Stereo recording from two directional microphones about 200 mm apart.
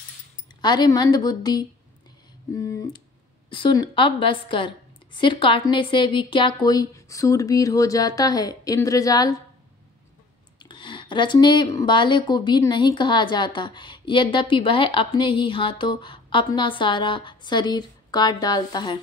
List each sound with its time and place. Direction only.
0.6 s speech: 20° left (ahead or behind)
10.6 s speech: 25° left (ahead or behind)